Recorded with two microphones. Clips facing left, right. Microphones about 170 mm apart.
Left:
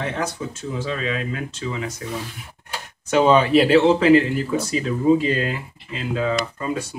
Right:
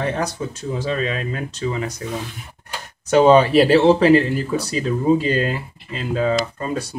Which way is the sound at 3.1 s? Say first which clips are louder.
Right 3 dB; 40° right (ahead or behind).